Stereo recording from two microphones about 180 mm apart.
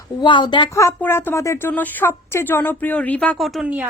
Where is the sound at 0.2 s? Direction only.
25° left (ahead or behind).